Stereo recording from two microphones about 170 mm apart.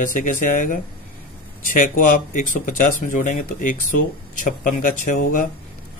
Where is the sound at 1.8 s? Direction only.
55° left (ahead or behind).